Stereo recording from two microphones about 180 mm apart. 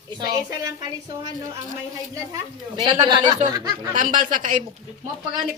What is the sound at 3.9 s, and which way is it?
Speech, 45° right (ahead or behind).